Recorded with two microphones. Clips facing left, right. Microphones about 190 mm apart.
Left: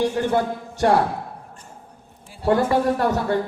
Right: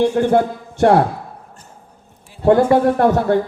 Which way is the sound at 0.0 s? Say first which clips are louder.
Right 6 dB; 55° right (ahead or behind).